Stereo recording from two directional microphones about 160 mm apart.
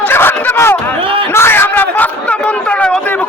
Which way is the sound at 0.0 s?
15° left (ahead or behind).